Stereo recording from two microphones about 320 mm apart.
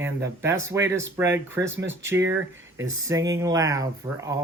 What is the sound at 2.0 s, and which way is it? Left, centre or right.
Speech, centre.